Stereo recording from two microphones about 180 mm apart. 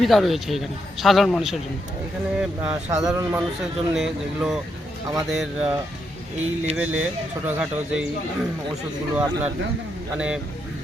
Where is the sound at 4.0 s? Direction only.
5° right (ahead or behind).